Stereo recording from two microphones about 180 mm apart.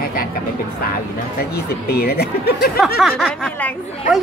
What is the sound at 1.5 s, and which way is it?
Speech, 60° left (ahead or behind).